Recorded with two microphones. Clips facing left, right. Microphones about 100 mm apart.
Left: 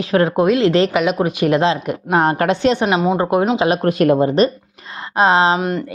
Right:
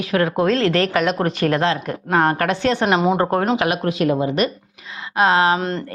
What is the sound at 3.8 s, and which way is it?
Speech, 50° left (ahead or behind).